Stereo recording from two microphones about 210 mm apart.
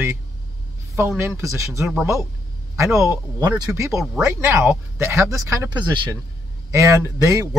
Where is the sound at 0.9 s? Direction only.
10° right (ahead or behind).